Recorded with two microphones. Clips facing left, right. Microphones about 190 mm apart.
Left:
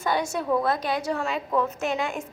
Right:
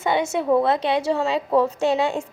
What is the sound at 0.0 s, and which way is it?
A woman's voice, 25° right (ahead or behind).